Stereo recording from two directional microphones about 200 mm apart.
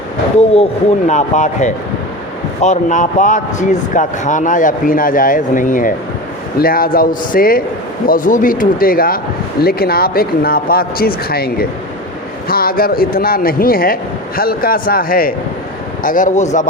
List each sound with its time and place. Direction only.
1.0 s speech: 35° left (ahead or behind)